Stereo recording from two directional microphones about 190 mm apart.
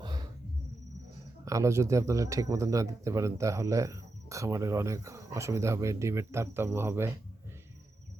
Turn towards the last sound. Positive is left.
turn(degrees=-10)  # may be behind; listen again after turning